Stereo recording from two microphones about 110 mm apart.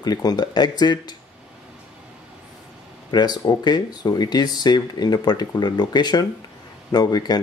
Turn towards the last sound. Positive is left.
turn(degrees=40)  # may be behind; listen again after turning